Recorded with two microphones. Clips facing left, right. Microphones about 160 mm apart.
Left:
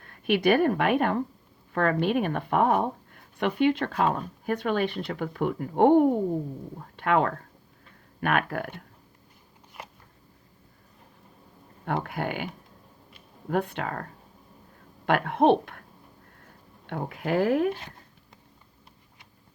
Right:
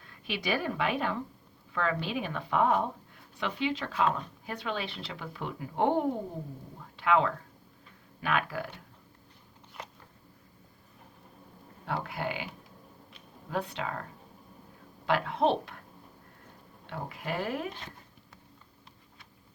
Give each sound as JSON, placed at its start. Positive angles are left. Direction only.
{"t": 0.0, "sound": "a woman's voice", "side_deg": 60}
{"t": 12.0, "sound": "speech", "side_deg": 55}
{"t": 13.5, "sound": "a woman's voice", "side_deg": 55}
{"t": 16.8, "sound": "speech", "side_deg": 55}